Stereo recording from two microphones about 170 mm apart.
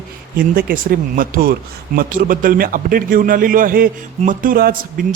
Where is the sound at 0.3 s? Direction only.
55° right (ahead or behind).